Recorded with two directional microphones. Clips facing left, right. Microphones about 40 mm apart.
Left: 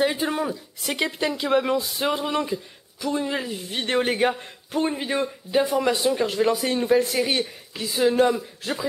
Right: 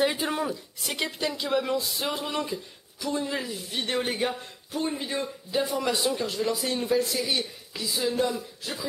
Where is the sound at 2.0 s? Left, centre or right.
Centre.